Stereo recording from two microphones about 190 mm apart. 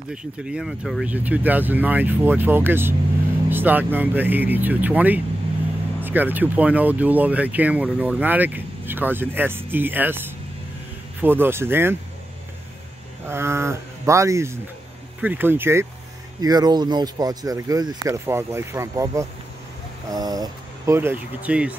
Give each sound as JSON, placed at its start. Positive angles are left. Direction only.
{"t": 0.1, "sound": "speech", "side_deg": -5}
{"t": 13.3, "sound": "speech", "side_deg": -15}